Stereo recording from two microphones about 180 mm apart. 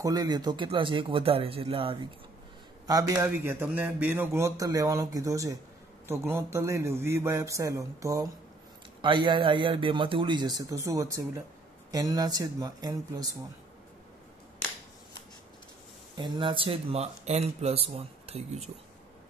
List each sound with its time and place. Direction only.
0.0 s a man's voice: 20° right (ahead or behind)
16.2 s speech: 25° right (ahead or behind)